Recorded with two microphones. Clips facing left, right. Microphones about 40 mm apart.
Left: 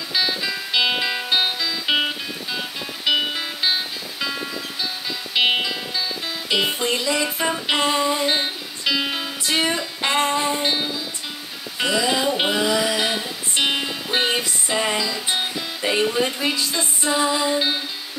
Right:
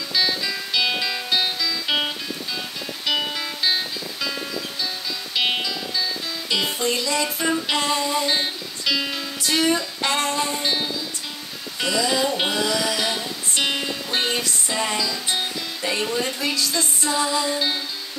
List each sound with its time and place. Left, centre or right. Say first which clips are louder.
0.1 s music: even; centre